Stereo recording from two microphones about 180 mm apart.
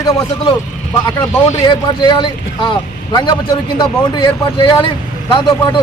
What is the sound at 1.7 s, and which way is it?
Speech, 25° left (ahead or behind).